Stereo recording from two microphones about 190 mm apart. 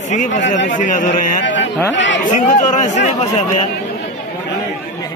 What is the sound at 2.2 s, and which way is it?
Speech, 40° left (ahead or behind).